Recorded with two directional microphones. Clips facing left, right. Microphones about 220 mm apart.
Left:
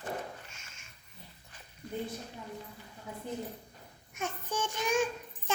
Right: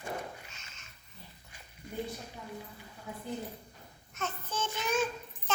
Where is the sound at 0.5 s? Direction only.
10° left (ahead or behind).